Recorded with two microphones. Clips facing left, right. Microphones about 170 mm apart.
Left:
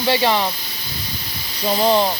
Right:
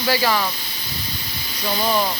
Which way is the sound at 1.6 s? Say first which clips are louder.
Left 5 dB; 25° left (ahead or behind).